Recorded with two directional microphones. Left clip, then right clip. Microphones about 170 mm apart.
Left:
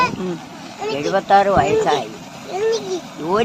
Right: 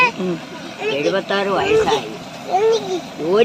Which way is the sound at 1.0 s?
30° left (ahead or behind).